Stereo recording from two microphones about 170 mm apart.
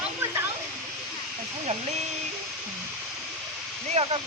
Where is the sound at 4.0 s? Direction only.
40° right (ahead or behind).